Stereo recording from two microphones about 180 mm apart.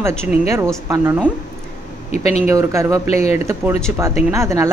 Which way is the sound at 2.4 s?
15° right (ahead or behind).